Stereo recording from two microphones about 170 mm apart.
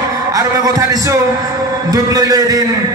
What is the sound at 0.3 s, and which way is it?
A man's voice, 20° right (ahead or behind).